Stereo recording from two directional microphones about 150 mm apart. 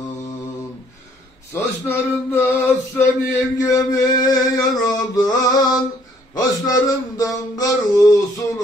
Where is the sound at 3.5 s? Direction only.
25° left (ahead or behind).